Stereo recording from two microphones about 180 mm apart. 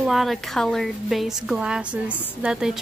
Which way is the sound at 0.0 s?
Centre (ahead or behind).